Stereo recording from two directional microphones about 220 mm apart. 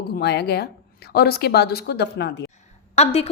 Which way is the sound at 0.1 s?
50° left (ahead or behind).